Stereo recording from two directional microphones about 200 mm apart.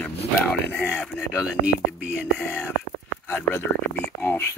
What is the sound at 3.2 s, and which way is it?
Speech, 10° left (ahead or behind).